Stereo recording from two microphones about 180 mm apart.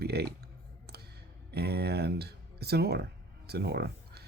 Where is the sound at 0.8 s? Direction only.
65° right (ahead or behind).